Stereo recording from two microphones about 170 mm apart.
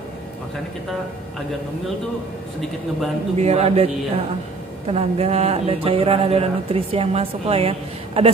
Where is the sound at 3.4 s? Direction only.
40° right (ahead or behind).